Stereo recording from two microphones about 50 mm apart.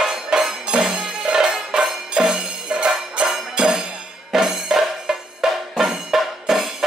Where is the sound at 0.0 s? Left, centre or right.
Centre.